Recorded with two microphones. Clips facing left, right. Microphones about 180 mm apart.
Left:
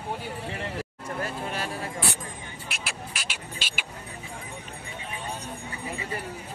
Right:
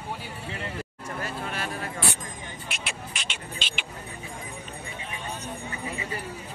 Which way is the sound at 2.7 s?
Centre (ahead or behind).